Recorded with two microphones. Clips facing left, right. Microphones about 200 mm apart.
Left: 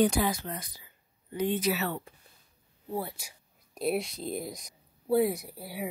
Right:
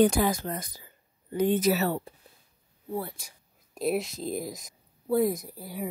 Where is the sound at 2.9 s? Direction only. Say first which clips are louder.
Right 1 dB; 15° left (ahead or behind).